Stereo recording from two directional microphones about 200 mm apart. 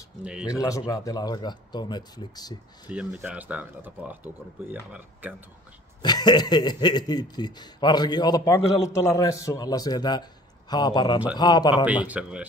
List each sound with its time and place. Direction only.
0.2 s speech: 5° right (ahead or behind)
0.5 s speech: 15° left (ahead or behind)
2.9 s speech: 5° right (ahead or behind)
6.0 s speech: 20° left (ahead or behind)
12.1 s speech: 5° right (ahead or behind)